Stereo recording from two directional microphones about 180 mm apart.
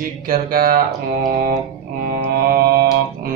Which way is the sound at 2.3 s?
55° right (ahead or behind).